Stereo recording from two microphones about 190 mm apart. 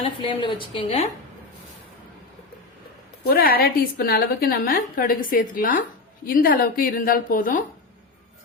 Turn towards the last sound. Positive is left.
turn(degrees=45)  # may be behind; listen again after turning